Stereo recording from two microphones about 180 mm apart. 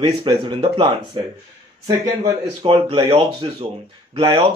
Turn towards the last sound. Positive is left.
turn(degrees=-30)  # may be behind; listen again after turning